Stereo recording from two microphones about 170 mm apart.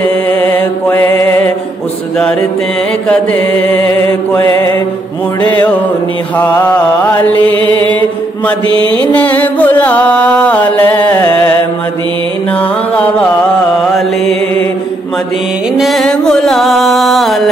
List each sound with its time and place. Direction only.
1.1 s music: 15° left (ahead or behind)
3.1 s chant: 10° left (ahead or behind)
6.3 s mantra: 10° left (ahead or behind)
7.4 s mantra: 30° right (ahead or behind)
9.1 s music: 10° left (ahead or behind)
12.5 s music: 10° left (ahead or behind)
15.8 s music: centre (ahead or behind)